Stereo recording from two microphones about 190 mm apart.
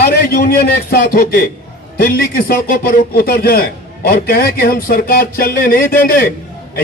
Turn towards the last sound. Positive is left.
turn(degrees=50)  # may be behind; listen again after turning